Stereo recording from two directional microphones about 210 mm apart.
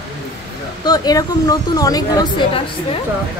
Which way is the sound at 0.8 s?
20° left (ahead or behind).